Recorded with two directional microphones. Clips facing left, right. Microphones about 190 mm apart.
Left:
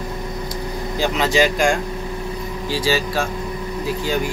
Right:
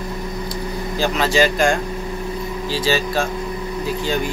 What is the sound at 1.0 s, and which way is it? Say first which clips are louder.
Speech: even; 15° left (ahead or behind).